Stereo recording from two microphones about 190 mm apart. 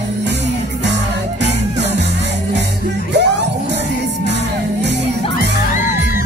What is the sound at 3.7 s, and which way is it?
Music, 65° right (ahead or behind).